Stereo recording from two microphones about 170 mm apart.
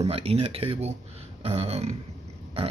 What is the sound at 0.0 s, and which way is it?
Speech, 35° right (ahead or behind).